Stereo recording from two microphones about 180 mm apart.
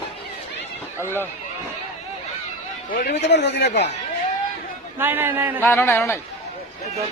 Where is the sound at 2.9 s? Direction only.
60° left (ahead or behind).